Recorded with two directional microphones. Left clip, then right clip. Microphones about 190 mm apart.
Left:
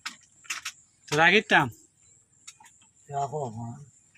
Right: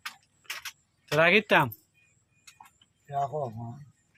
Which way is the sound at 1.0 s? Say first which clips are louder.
Left 1 dB; 30° right (ahead or behind).